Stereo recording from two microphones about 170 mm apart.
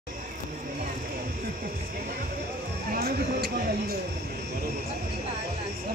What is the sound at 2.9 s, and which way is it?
Speech, 70° right (ahead or behind).